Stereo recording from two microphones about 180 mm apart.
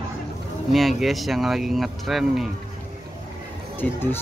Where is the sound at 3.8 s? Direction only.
10° left (ahead or behind).